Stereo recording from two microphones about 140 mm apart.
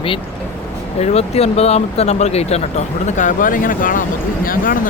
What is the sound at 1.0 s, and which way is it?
Speech, 45° left (ahead or behind).